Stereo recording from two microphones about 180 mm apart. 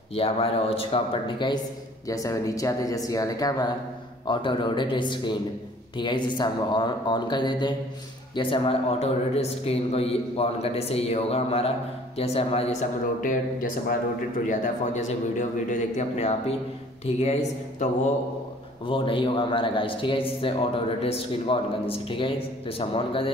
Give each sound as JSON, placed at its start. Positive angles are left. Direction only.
{"t": 0.1, "sound": "a man's voice", "side_deg": 30}
{"t": 13.2, "sound": "a man's voice", "side_deg": 50}
{"t": 18.9, "sound": "a man's voice", "side_deg": 30}